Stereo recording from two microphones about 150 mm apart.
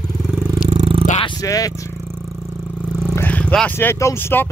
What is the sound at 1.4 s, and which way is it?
Speech, 25° left (ahead or behind).